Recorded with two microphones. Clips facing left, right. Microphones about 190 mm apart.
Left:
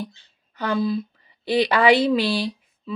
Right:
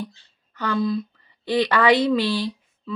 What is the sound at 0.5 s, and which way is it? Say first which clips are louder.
A woman's voice: even; 10° left (ahead or behind).